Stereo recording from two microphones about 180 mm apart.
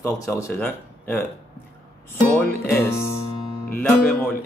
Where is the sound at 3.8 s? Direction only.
10° left (ahead or behind).